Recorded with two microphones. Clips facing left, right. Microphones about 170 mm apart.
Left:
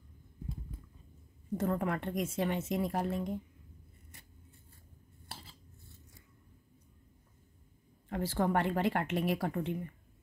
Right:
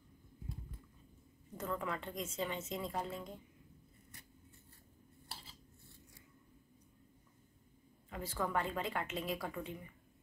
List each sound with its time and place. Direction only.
1.6 s a woman's voice: 55° left (ahead or behind)
8.1 s speech: 65° left (ahead or behind)